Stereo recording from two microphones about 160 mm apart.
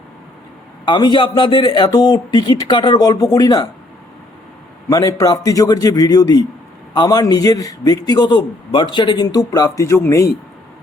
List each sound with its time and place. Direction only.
0.9 s speech: 30° left (ahead or behind)
4.9 s speech: 20° left (ahead or behind)